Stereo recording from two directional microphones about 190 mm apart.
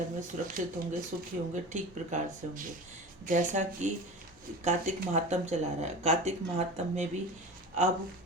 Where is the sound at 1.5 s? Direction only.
40° right (ahead or behind).